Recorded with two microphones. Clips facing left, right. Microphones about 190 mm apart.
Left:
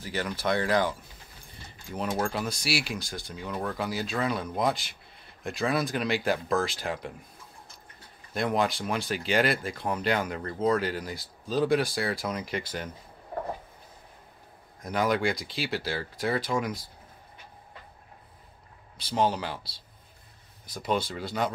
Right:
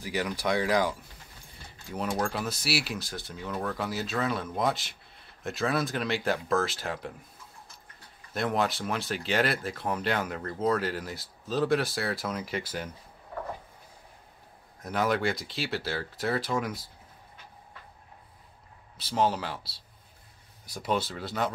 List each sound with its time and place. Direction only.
0.0 s speech: 10° right (ahead or behind)
2.1 s speech: centre (ahead or behind)
8.3 s speech: centre (ahead or behind)
14.8 s speech: centre (ahead or behind)
18.9 s speech: 5° right (ahead or behind)